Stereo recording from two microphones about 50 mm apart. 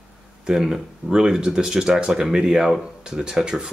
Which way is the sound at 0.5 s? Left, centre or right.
Centre.